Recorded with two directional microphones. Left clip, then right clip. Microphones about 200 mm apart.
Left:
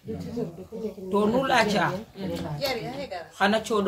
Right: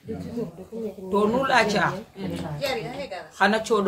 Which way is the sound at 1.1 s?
10° right (ahead or behind).